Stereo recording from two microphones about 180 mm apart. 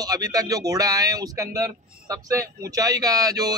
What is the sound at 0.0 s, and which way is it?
A man's voice, 20° right (ahead or behind).